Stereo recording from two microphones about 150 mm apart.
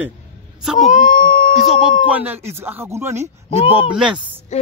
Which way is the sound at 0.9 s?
65° left (ahead or behind).